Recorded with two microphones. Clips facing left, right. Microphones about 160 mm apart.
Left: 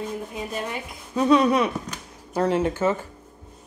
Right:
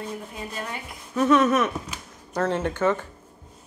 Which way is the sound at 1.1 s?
15° left (ahead or behind).